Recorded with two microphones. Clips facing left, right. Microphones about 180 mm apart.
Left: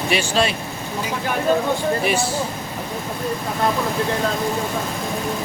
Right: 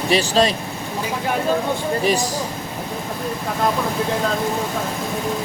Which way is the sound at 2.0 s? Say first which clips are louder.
Right 1 dB; 35° right (ahead or behind).